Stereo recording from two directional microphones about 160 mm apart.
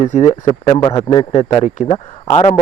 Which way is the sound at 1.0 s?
35° left (ahead or behind).